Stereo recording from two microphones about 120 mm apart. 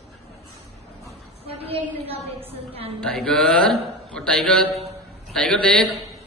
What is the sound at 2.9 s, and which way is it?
A man's voice, 5° left (ahead or behind).